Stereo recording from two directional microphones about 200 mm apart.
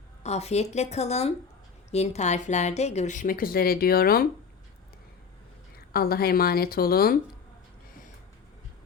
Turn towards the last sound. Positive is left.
turn(degrees=50)  # may be behind; listen again after turning